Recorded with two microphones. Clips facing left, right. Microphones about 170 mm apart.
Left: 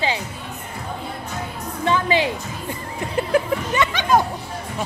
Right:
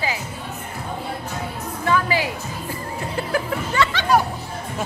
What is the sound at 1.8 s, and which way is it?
Music, 25° left (ahead or behind).